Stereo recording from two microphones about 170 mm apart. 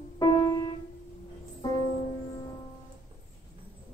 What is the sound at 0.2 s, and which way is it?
Music, 20° left (ahead or behind).